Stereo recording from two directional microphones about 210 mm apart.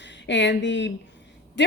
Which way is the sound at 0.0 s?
55° left (ahead or behind).